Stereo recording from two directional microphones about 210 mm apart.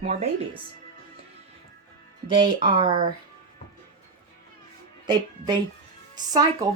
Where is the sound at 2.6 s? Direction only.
20° right (ahead or behind).